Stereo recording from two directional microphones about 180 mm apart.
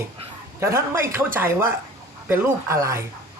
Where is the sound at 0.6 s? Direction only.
15° right (ahead or behind).